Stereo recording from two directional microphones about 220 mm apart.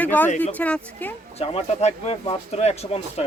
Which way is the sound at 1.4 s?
25° left (ahead or behind).